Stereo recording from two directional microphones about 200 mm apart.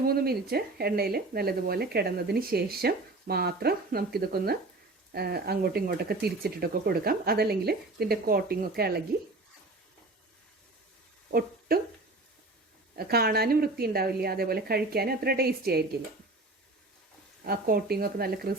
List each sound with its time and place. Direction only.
0.1 s speech: 50° right (ahead or behind)
11.3 s a sound: 50° right (ahead or behind)
13.0 s speech: 50° right (ahead or behind)
17.4 s speech: 50° right (ahead or behind)